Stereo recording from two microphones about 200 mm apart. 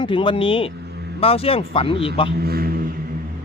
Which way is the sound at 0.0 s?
25° left (ahead or behind).